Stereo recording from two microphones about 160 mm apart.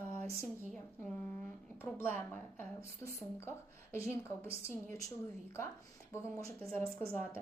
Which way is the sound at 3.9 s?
15° left (ahead or behind).